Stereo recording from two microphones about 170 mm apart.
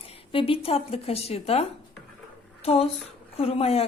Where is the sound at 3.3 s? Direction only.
35° left (ahead or behind).